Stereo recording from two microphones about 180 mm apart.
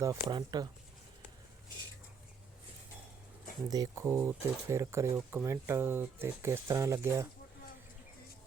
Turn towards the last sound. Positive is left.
turn(degrees=-15)  # may be behind; listen again after turning